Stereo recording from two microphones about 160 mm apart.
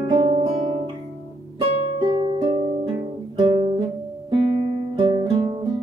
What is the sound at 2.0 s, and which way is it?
Music, 30° right (ahead or behind).